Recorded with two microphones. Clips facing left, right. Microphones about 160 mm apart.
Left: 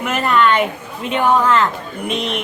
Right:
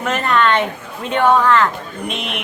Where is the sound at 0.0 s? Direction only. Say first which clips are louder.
Left 1 dB; 10° left (ahead or behind).